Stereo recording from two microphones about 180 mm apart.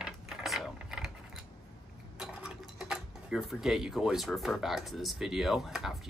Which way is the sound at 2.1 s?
5° right (ahead or behind).